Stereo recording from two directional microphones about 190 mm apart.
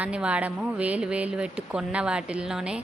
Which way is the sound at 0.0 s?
5° right (ahead or behind).